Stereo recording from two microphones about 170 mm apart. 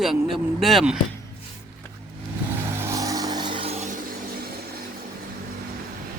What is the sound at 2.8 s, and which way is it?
Vehicle, 20° right (ahead or behind).